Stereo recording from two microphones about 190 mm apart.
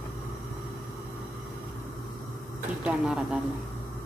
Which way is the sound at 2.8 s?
5° right (ahead or behind).